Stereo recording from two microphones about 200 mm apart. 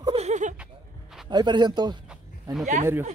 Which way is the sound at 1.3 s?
20° right (ahead or behind).